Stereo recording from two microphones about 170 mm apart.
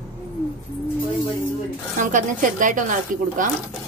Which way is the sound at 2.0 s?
50° right (ahead or behind).